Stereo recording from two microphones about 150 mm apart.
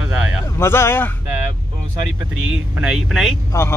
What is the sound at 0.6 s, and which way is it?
Speech, 15° left (ahead or behind).